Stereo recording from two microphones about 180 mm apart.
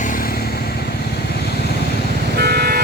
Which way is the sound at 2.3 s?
65° right (ahead or behind).